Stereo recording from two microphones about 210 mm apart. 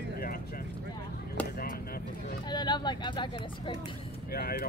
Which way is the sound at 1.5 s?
45° left (ahead or behind).